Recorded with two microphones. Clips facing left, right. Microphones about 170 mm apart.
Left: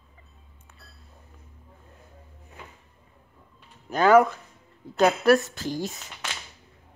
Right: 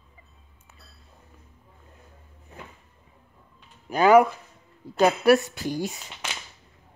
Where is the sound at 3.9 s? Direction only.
10° right (ahead or behind).